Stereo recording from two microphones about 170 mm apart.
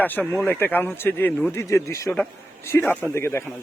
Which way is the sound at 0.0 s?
10° left (ahead or behind).